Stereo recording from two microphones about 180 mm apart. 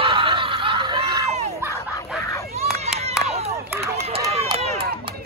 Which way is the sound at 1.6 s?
15° right (ahead or behind).